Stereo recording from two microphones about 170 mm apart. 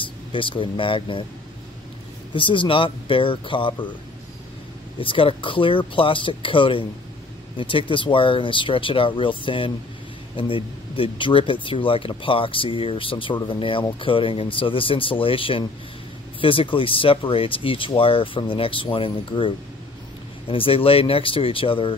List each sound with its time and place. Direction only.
0.0 s speech: 30° left (ahead or behind)
2.3 s speech: 30° left (ahead or behind)
4.9 s speech: 30° left (ahead or behind)